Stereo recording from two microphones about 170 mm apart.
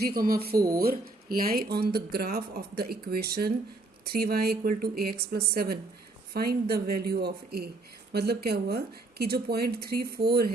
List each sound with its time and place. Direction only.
0.0 s a woman's voice: 60° right (ahead or behind)